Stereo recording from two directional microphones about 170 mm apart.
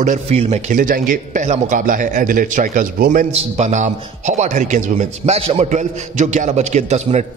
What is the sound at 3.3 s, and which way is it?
A man's voice, 40° right (ahead or behind).